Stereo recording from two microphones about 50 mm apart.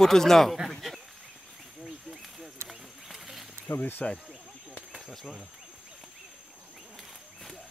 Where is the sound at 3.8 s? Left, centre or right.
Left.